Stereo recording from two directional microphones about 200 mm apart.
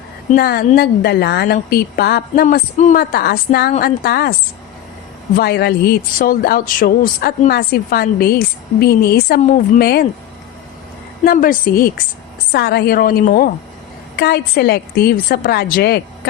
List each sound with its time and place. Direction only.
0.3 s speech: 50° left (ahead or behind)
5.4 s speech: 50° left (ahead or behind)
9.4 s a woman's voice: 40° left (ahead or behind)
9.8 s speech: 50° left (ahead or behind)
11.3 s speech: 45° left (ahead or behind)